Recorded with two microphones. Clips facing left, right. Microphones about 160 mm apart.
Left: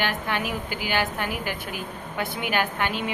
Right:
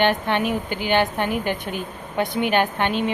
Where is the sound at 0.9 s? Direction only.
25° right (ahead or behind).